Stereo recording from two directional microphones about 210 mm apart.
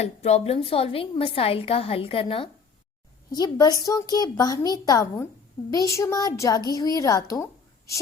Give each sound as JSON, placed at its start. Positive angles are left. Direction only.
{"t": 0.0, "sound": "a woman's voice", "side_deg": 30}